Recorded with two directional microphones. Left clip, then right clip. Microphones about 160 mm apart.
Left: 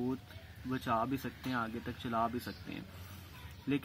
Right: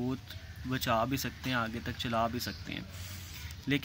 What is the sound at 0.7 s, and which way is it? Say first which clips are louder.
Speech: right 4 dB; 15° right (ahead or behind).